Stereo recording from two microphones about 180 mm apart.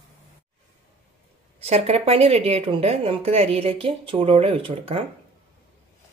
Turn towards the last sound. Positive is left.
turn(degrees=-30)  # may be behind; listen again after turning